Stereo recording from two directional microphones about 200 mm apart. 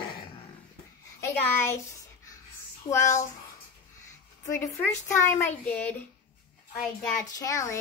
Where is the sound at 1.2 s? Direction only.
15° left (ahead or behind).